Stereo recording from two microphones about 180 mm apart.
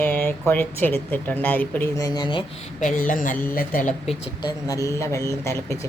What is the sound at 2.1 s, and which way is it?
Speech, 25° left (ahead or behind).